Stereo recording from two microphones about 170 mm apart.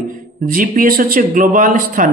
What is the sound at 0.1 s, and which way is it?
Speech, 55° right (ahead or behind).